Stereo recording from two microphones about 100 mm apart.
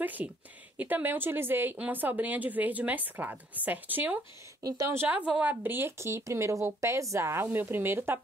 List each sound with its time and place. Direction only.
0.0 s a woman's voice: 15° right (ahead or behind)
4.6 s a woman's voice: 30° right (ahead or behind)
5.0 s speech: 10° right (ahead or behind)